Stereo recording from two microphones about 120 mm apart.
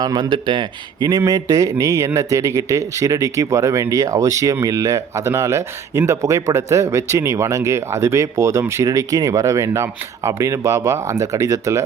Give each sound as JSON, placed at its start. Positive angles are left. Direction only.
{"t": 0.0, "sound": "speech", "side_deg": -35}